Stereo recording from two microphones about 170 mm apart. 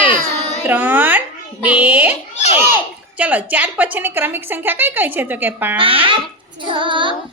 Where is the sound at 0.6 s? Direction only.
10° right (ahead or behind).